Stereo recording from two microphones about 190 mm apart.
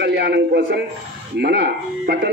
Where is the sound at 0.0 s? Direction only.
65° right (ahead or behind).